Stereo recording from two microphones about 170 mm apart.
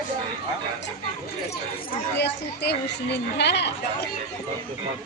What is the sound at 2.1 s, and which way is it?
A woman's voice, 80° left.